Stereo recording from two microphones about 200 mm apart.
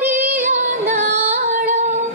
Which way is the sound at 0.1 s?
35° right (ahead or behind).